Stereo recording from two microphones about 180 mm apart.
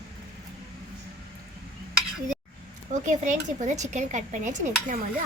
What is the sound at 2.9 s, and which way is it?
Speech, 45° right (ahead or behind).